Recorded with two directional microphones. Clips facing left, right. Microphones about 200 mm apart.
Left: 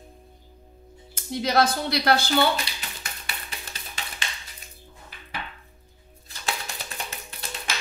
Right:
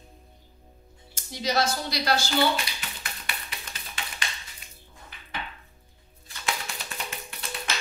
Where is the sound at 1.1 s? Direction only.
55° left (ahead or behind).